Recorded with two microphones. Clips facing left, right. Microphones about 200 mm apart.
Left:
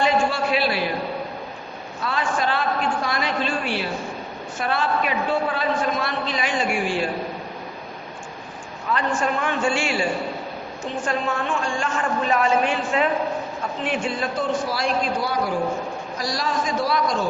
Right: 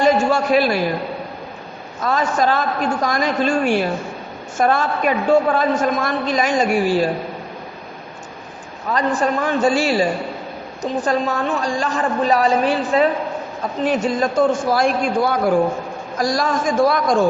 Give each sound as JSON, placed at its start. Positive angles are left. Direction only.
{"t": 0.0, "sound": "a sound", "side_deg": -45}
{"t": 2.0, "sound": "a man's voice", "side_deg": -40}
{"t": 8.9, "sound": "a woman's voice", "side_deg": -35}